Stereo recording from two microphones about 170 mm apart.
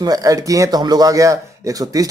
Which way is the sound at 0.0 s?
20° right (ahead or behind).